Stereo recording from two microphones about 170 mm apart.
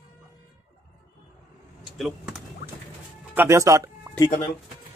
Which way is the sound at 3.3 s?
15° right (ahead or behind).